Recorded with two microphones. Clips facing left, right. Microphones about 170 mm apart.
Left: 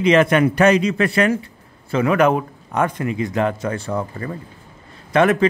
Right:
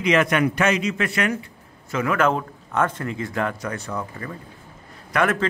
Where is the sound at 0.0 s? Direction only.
30° left (ahead or behind).